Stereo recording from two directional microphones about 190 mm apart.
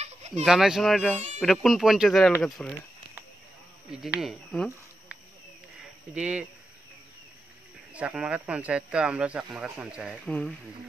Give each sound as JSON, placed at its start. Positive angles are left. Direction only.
{"t": 0.0, "sound": "a sound", "side_deg": -35}
{"t": 0.5, "sound": "speech", "side_deg": 0}
{"t": 3.9, "sound": "speech", "side_deg": -5}
{"t": 6.1, "sound": "speech", "side_deg": -5}
{"t": 7.9, "sound": "speech", "side_deg": -5}